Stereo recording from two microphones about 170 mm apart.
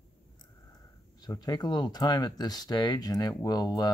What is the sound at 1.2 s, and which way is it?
Speech, 25° left (ahead or behind).